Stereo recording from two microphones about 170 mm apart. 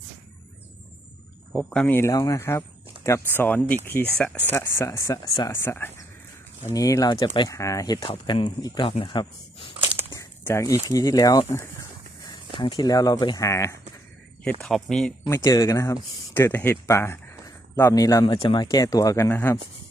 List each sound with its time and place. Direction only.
1.5 s speech: 10° left (ahead or behind); by 9.7 s 30° left (ahead or behind)
10.4 s speech: 15° left (ahead or behind)
12.5 s speech: 30° left (ahead or behind)
14.6 s speech: centre (ahead or behind)
15.3 s speech: 20° left (ahead or behind)